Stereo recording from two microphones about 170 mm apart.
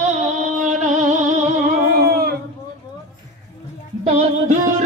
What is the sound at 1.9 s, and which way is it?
Humming, 65° right (ahead or behind).